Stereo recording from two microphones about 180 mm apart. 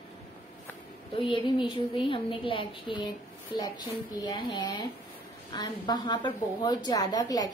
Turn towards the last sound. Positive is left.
turn(degrees=20)  # may be behind; listen again after turning